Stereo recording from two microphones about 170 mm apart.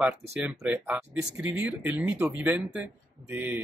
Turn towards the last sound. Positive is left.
turn(degrees=-10)  # may be behind; listen again after turning